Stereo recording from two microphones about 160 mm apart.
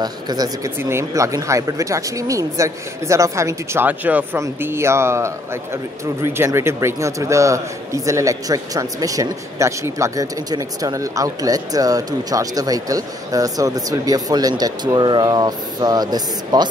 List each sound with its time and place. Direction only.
0.0 s a man's voice: 25° right (ahead or behind)